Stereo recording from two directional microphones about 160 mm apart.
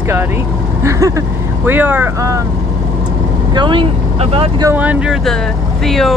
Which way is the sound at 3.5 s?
30° right (ahead or behind).